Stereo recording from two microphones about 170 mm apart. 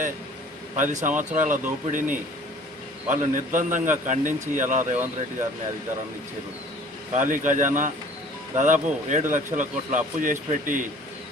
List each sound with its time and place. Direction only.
0.8 s a man's voice: 45° right (ahead or behind)
7.1 s a man's voice: 50° right (ahead or behind)